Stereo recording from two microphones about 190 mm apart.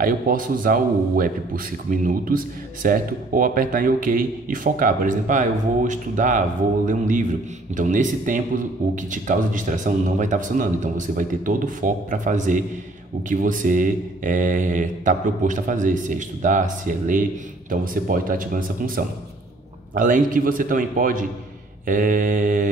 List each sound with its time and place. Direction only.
0.0 s a man's voice: 45° right (ahead or behind)